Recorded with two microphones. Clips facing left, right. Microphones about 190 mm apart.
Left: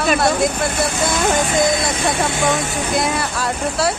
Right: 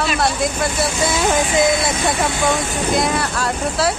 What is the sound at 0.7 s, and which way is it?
Speech, 60° left (ahead or behind).